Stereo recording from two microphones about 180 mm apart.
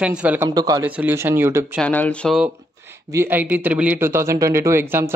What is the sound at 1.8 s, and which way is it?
Speech, 10° left (ahead or behind).